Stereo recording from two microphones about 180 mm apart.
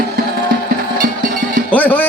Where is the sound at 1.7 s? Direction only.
10° left (ahead or behind).